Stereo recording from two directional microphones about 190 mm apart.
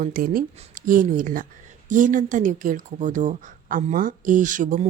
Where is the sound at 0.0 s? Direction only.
50° right (ahead or behind).